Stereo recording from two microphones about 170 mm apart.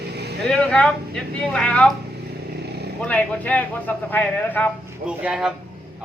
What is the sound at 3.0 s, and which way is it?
A man's voice, 10° left (ahead or behind).